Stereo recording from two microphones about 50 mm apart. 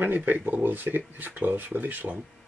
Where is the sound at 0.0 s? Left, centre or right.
Right.